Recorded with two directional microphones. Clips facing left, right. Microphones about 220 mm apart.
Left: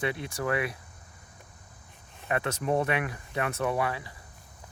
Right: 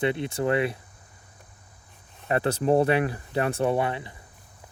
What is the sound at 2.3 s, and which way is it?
Speech, 35° right (ahead or behind).